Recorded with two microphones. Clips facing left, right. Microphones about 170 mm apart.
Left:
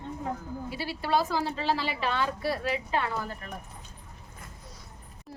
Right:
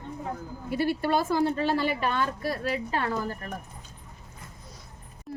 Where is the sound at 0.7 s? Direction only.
55° right (ahead or behind).